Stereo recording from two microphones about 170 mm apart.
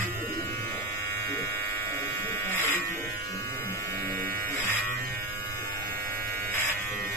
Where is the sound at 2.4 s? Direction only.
10° left (ahead or behind).